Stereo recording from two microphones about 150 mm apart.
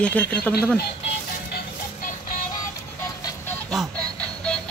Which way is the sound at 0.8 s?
90° left.